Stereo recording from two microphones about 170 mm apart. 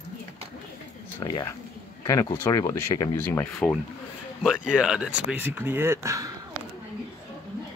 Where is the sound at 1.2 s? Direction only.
20° left (ahead or behind).